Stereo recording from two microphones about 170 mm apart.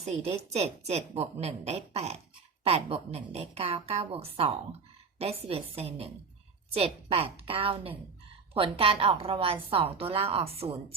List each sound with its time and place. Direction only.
0.0 s a woman's voice: 40° right (ahead or behind)